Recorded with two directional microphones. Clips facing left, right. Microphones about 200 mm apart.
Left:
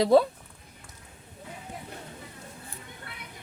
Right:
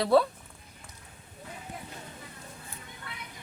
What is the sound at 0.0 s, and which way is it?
Speech, 20° left (ahead or behind).